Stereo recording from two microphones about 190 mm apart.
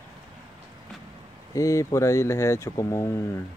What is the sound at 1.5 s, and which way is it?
Speech, 15° left (ahead or behind).